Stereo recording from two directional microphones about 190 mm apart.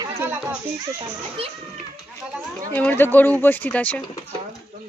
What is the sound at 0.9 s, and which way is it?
Speech, 30° right (ahead or behind).